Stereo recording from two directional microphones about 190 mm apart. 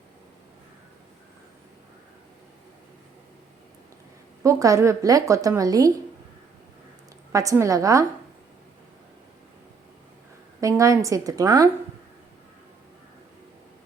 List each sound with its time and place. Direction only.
4.4 s a woman's voice: 15° right (ahead or behind)
7.3 s a woman's voice: 15° right (ahead or behind)
10.6 s a woman's voice: 15° right (ahead or behind)